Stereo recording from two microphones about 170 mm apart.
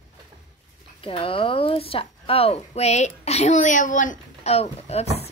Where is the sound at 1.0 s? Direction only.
30° left (ahead or behind).